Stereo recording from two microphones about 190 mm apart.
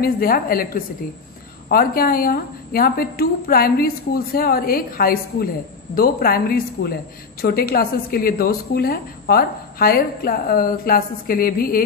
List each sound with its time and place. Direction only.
0.0 s a woman's voice: 50° left (ahead or behind)